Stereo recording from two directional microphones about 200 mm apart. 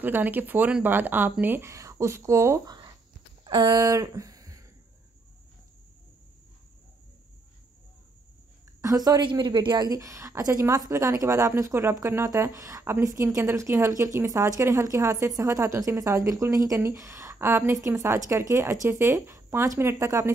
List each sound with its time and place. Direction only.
0.0 s speech: 10° right (ahead or behind)
8.8 s speech: 20° right (ahead or behind)